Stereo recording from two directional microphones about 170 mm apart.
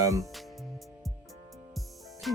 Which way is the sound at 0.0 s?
20° right (ahead or behind).